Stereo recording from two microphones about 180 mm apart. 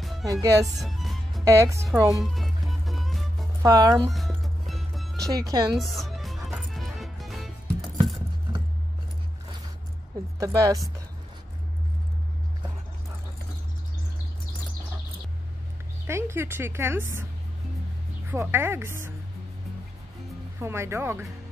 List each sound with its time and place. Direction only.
0.2 s speech: 20° right (ahead or behind)
0.8 s music: centre (ahead or behind)
1.4 s a woman's voice: 15° right (ahead or behind)
2.0 s music: centre (ahead or behind)
3.6 s speech: 20° right (ahead or behind)
4.1 s music: centre (ahead or behind)
10.4 s speech: 20° right (ahead or behind)
16.1 s a woman's voice: 15° right (ahead or behind)
18.3 s a woman's voice: 15° right (ahead or behind)
20.5 s a woman's voice: 15° right (ahead or behind)